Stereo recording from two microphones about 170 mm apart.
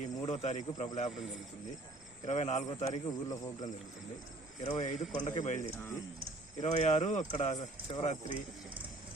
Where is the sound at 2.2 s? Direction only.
45° left (ahead or behind).